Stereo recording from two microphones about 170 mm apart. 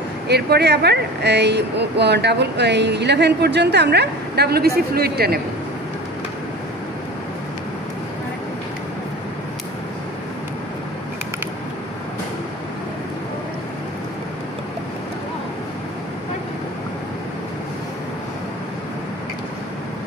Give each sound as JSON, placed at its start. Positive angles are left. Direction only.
{"t": 0.3, "sound": "speech", "side_deg": -75}